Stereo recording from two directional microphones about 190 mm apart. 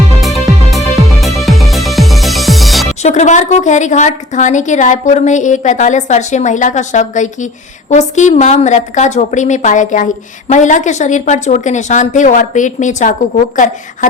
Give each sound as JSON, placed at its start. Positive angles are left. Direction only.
{"t": 0.2, "sound": "music", "side_deg": 0}
{"t": 3.0, "sound": "a woman's voice", "side_deg": 35}